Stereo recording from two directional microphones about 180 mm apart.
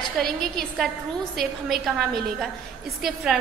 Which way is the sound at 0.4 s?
Centre (ahead or behind).